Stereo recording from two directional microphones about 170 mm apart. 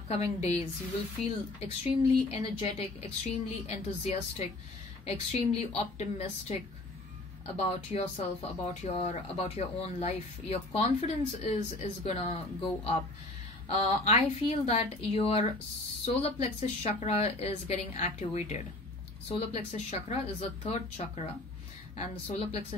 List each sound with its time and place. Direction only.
0.1 s speech: 40° left (ahead or behind)
1.6 s speech: 35° left (ahead or behind)
13.7 s speech: 40° left (ahead or behind)